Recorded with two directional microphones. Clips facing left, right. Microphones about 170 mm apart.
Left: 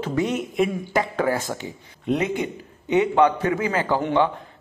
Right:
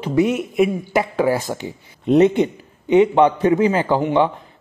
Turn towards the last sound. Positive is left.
turn(degrees=-20)  # may be behind; listen again after turning